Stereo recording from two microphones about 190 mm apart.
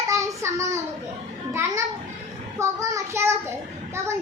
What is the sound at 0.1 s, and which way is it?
Child singing, 15° right (ahead or behind).